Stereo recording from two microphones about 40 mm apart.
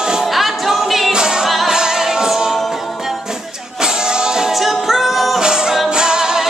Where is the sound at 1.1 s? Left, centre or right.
Centre.